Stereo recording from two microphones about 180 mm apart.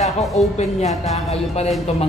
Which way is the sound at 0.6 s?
40° left (ahead or behind).